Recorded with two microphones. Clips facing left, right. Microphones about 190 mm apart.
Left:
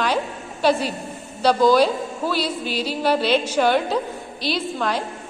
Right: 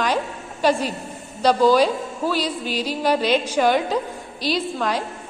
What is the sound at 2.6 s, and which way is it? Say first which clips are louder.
Music: even; 40° right (ahead or behind).